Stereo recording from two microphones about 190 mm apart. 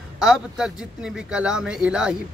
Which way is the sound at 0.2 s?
5° right (ahead or behind).